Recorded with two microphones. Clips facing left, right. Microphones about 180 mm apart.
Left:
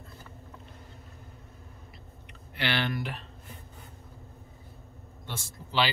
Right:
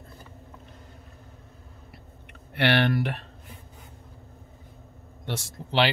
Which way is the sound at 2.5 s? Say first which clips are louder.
Right 8 dB; 60° right (ahead or behind).